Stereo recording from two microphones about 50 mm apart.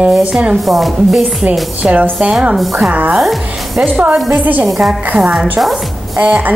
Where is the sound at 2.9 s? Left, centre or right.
Right.